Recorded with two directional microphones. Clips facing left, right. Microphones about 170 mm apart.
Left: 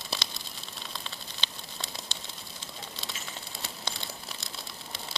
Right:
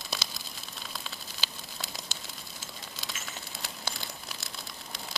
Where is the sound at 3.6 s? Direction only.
Centre (ahead or behind).